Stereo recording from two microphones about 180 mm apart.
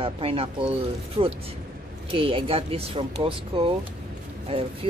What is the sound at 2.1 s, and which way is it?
Speech, 30° right (ahead or behind).